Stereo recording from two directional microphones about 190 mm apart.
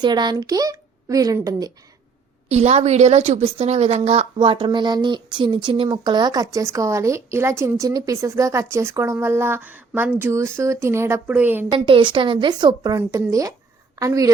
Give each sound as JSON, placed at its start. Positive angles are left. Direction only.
{"t": 0.0, "sound": "a woman's voice", "side_deg": -20}
{"t": 2.5, "sound": "a woman's voice", "side_deg": -35}
{"t": 11.7, "sound": "a woman's voice", "side_deg": -25}